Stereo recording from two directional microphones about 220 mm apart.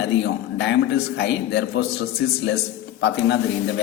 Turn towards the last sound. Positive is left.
turn(degrees=50)  # may be behind; listen again after turning